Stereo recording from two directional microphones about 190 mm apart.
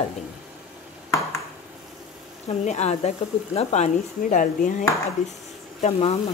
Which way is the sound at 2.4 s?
35° left (ahead or behind).